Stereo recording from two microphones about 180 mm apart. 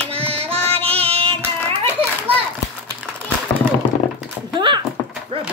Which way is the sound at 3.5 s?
15° left (ahead or behind).